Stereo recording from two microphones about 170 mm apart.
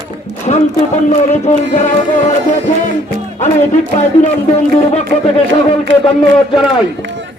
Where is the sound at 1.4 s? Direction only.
45° left (ahead or behind).